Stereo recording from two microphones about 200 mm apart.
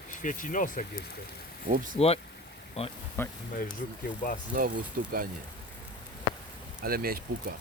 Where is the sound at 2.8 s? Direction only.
30° left (ahead or behind).